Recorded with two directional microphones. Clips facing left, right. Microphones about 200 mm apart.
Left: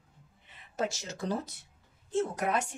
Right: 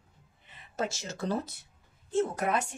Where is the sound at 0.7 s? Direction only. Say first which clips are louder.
Even; 15° left (ahead or behind).